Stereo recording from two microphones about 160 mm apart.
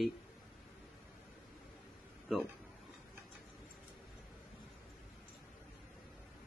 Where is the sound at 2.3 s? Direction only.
Centre (ahead or behind).